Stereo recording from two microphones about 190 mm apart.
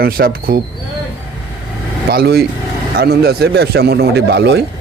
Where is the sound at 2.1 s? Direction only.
55° right (ahead or behind).